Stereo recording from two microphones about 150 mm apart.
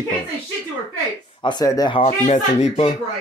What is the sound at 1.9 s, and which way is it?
Speech, 50° left (ahead or behind).